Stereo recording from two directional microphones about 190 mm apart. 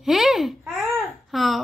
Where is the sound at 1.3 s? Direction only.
Centre (ahead or behind).